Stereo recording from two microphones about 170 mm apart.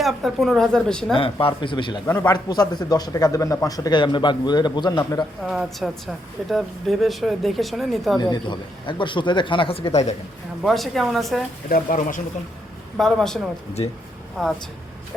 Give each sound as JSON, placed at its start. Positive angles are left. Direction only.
{"t": 0.0, "sound": "a woman's voice", "side_deg": 0}
{"t": 1.1, "sound": "speech", "side_deg": 30}
{"t": 2.0, "sound": "a man's voice", "side_deg": 15}
{"t": 5.4, "sound": "a woman's voice", "side_deg": 0}
{"t": 8.2, "sound": "speech", "side_deg": 25}
{"t": 10.6, "sound": "a woman's voice", "side_deg": 0}
{"t": 11.7, "sound": "speech", "side_deg": 50}
{"t": 13.0, "sound": "a woman's voice", "side_deg": 5}